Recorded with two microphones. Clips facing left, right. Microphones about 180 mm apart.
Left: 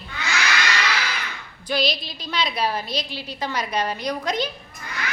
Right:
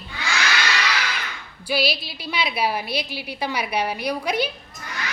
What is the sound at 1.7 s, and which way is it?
A woman's voice, 5° right (ahead or behind).